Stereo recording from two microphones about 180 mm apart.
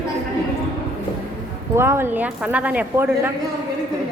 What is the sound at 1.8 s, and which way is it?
A woman's voice, 15° right (ahead or behind).